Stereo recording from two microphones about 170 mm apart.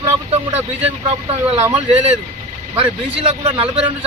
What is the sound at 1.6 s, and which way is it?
Speech, 15° right (ahead or behind).